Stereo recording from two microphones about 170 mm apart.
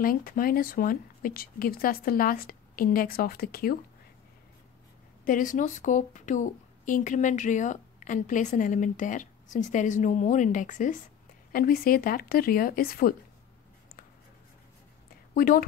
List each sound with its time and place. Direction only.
0.0 s speech: 55° left (ahead or behind)
5.2 s a woman's voice: 50° left (ahead or behind)
15.3 s a woman's voice: 55° left (ahead or behind)